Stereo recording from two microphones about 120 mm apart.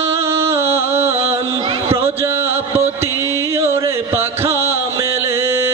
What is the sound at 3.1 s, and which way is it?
Music, 20° right (ahead or behind).